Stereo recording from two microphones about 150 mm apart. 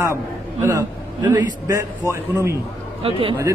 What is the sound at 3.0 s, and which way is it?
Speech, 40° right (ahead or behind).